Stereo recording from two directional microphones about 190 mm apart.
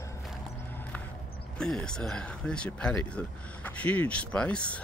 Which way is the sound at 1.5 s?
5° left (ahead or behind).